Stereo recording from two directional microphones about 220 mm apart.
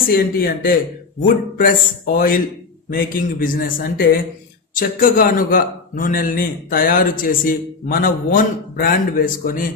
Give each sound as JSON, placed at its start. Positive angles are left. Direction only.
{"t": 0.0, "sound": "a man's voice", "side_deg": 40}